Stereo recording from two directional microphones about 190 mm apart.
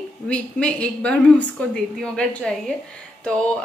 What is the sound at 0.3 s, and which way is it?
Speech, 5° left (ahead or behind).